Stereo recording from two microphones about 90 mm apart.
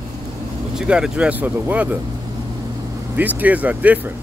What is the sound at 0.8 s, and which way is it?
Speech, 5° right (ahead or behind).